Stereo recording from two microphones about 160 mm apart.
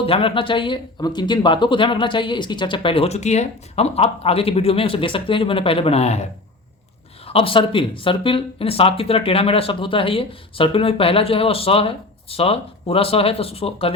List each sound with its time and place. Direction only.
0.0 s speech: 35° left (ahead or behind)
7.3 s speech: 35° left (ahead or behind)